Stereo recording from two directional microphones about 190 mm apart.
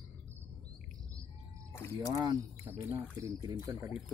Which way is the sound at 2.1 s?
20° right (ahead or behind).